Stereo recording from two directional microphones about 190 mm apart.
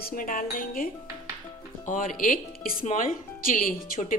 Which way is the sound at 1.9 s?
45° left (ahead or behind).